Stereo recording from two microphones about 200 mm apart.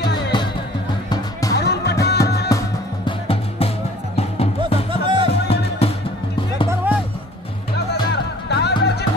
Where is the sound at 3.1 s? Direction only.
30° left (ahead or behind).